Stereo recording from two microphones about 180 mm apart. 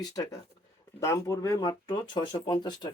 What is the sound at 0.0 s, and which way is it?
Speech, 20° left (ahead or behind).